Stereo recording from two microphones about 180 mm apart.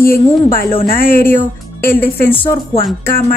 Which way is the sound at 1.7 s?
10° left (ahead or behind).